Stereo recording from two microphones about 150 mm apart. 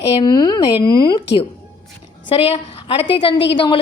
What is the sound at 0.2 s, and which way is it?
Speech, 25° left (ahead or behind).